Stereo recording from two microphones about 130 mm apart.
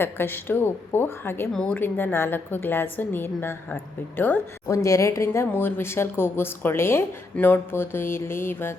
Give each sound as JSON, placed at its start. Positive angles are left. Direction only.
{"t": 0.0, "sound": "speech", "side_deg": 15}